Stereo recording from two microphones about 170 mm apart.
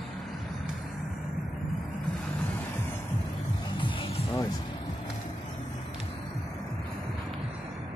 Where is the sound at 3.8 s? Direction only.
30° left (ahead or behind).